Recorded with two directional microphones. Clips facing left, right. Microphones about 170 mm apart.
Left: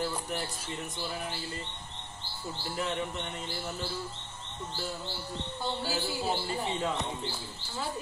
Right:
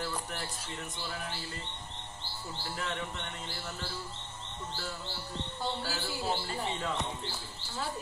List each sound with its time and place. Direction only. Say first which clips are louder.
0.0 s music: left 4 dB; 15° left (ahead or behind)
2.7 s a man's voice: left 5 dB; 15° left (ahead or behind)
5.9 s a man's voice: left 3 dB; 15° left (ahead or behind)